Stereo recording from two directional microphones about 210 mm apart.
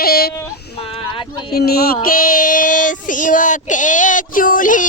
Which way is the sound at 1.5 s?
45° left (ahead or behind).